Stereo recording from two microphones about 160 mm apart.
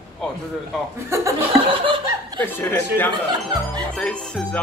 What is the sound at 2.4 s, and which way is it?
Speech, 15° left (ahead or behind).